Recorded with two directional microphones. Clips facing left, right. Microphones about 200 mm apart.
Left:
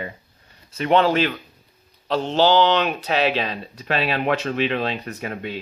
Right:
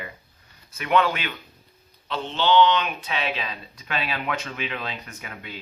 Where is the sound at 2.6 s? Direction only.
70° left (ahead or behind).